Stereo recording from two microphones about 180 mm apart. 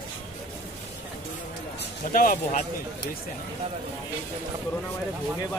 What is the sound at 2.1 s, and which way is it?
Speech, 50° left (ahead or behind).